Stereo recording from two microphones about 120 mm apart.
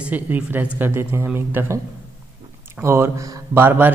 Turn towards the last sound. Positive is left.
turn(degrees=-15)  # may be behind; listen again after turning